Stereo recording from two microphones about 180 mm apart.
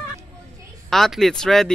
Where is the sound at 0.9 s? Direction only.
Centre (ahead or behind).